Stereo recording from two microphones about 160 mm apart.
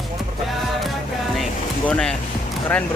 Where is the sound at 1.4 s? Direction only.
5° left (ahead or behind).